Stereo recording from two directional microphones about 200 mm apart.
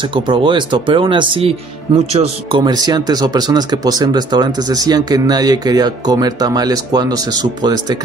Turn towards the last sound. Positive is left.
turn(degrees=-20)  # may be behind; listen again after turning